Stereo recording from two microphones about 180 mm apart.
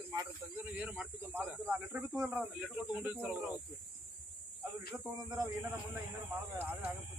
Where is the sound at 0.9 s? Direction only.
5° right (ahead or behind).